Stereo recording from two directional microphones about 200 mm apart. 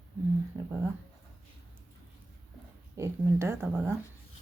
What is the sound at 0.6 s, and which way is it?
Speech, 20° right (ahead or behind).